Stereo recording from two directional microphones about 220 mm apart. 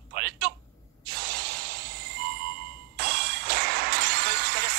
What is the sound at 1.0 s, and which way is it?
Spray, 45° right (ahead or behind).